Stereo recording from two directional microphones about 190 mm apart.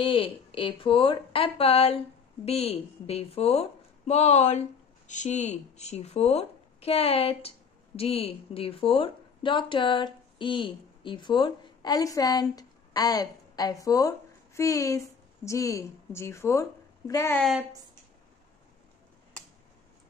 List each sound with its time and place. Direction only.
0.0 s a woman's voice: 25° left (ahead or behind)
17.4 s a woman's voice: centre (ahead or behind)